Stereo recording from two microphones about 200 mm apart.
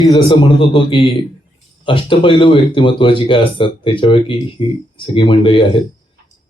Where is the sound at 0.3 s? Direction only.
25° left (ahead or behind).